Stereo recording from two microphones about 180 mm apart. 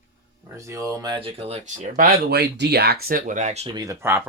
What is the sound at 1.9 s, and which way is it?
Speech, 55° right (ahead or behind).